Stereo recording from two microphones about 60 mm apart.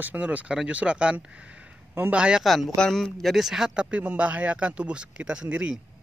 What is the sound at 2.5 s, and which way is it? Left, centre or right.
A man's voice, centre.